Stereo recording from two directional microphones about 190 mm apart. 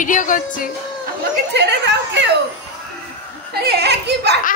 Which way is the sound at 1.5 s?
65° right (ahead or behind).